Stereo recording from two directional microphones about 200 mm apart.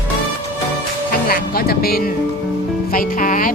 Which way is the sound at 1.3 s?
50° left (ahead or behind).